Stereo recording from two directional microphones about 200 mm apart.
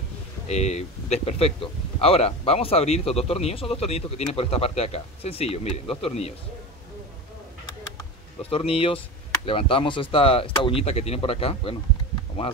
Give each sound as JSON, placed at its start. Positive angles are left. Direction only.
{"t": 0.5, "sound": "a man's voice", "side_deg": 35}
{"t": 8.4, "sound": "speech", "side_deg": 30}